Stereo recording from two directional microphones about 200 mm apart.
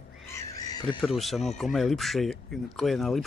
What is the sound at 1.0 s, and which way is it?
Speech, centre (ahead or behind).